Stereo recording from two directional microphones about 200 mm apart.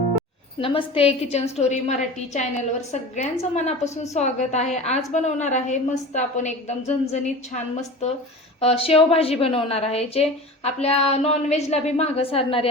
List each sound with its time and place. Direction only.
0.6 s a woman's voice: 25° left (ahead or behind)